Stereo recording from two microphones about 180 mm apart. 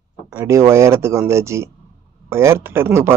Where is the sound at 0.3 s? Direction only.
15° right (ahead or behind).